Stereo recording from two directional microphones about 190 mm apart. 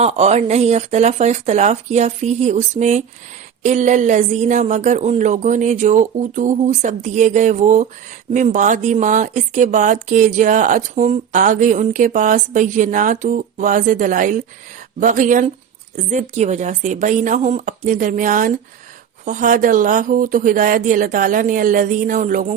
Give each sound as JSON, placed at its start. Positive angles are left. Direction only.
{"t": 0.0, "sound": "speech", "side_deg": -35}